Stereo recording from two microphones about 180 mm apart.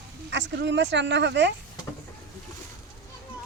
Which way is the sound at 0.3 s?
75° right (ahead or behind).